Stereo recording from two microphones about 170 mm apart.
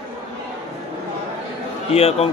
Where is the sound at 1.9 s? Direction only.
35° left (ahead or behind).